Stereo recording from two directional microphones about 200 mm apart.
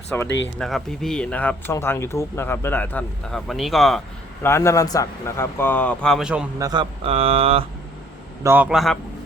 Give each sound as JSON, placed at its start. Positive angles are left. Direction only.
{"t": 0.1, "sound": "speech", "side_deg": 10}
{"t": 4.4, "sound": "speech", "side_deg": 15}
{"t": 6.6, "sound": "speech", "side_deg": -20}
{"t": 8.4, "sound": "a man's voice", "side_deg": -10}